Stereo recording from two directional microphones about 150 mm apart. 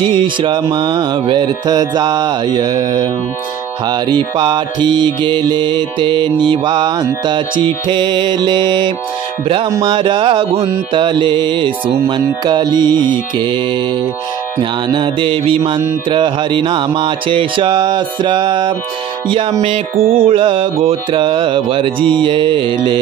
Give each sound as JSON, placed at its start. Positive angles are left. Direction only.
{"t": 0.0, "sound": "music", "side_deg": -35}
{"t": 3.8, "sound": "mantra", "side_deg": -30}
{"t": 12.4, "sound": "music", "side_deg": -30}
{"t": 14.6, "sound": "mantra", "side_deg": -30}
{"t": 20.0, "sound": "mantra", "side_deg": -75}
{"t": 20.2, "sound": "mantra", "side_deg": -35}